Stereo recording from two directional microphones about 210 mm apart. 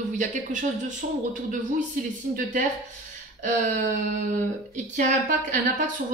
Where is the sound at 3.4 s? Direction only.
40° right (ahead or behind).